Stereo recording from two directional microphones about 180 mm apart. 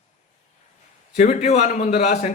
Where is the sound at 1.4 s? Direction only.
40° left (ahead or behind).